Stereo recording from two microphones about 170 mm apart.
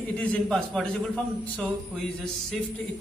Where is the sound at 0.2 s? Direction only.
5° left (ahead or behind).